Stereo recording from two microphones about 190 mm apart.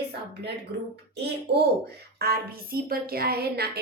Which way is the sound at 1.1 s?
60° right (ahead or behind).